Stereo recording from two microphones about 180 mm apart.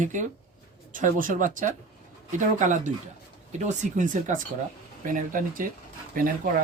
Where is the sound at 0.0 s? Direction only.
45° right (ahead or behind).